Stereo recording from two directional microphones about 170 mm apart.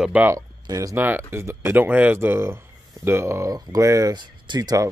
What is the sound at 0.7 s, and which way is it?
Speech, 20° right (ahead or behind).